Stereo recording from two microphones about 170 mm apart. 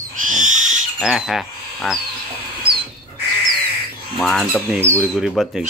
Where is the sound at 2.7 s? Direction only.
65° right (ahead or behind).